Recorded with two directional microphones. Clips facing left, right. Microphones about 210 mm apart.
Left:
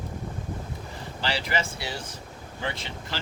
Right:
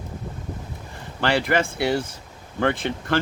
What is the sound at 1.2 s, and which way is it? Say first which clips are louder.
Speech: right 8 dB; 55° right (ahead or behind).